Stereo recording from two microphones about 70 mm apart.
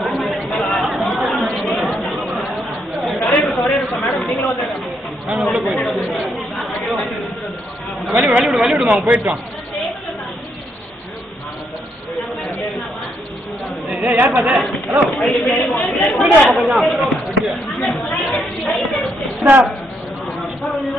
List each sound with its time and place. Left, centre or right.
0.0 s chatter: centre
3.3 s a sound: centre
6.0 s chatter: centre
8.2 s speech: centre
8.5 s speech: centre
8.8 s a man's voice: centre
14.0 s speech: right
14.3 s speech: centre
17.5 s chatter: centre
19.4 s speech: right
20.6 s a sound: centre